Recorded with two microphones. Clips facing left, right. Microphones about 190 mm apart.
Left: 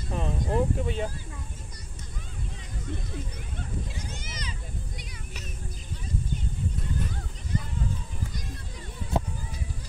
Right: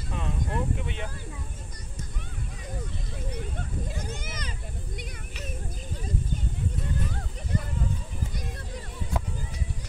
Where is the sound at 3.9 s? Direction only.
50° right (ahead or behind).